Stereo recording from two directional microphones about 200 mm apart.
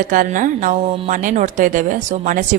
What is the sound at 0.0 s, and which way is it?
A woman's voice, 40° right (ahead or behind).